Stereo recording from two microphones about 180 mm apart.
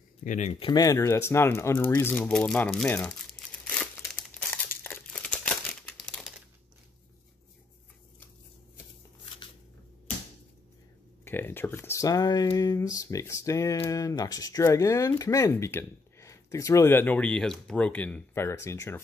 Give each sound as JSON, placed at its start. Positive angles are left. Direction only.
{"t": 0.2, "sound": "speech", "side_deg": 40}
{"t": 0.7, "sound": "speech", "side_deg": 20}
{"t": 4.8, "sound": "crumpling", "side_deg": 10}
{"t": 11.2, "sound": "speech", "side_deg": 10}